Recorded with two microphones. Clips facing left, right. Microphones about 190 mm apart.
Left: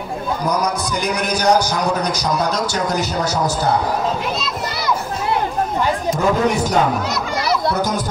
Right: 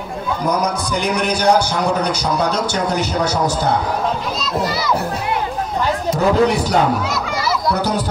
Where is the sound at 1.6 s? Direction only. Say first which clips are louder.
Right 1 dB; 40° left (ahead or behind).